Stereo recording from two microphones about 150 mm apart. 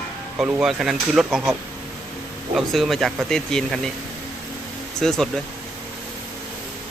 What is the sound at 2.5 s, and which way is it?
Speech, centre (ahead or behind).